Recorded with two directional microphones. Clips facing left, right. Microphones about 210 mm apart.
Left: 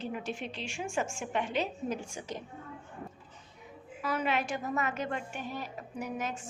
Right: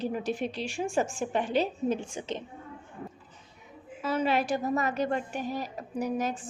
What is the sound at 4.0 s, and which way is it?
A woman's voice, 25° right (ahead or behind).